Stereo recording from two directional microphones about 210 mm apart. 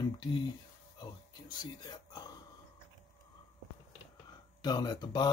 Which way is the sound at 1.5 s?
20° left (ahead or behind).